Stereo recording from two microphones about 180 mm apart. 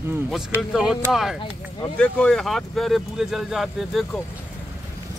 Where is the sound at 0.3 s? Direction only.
Centre (ahead or behind).